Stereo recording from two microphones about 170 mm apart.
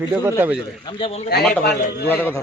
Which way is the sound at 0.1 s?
10° right (ahead or behind).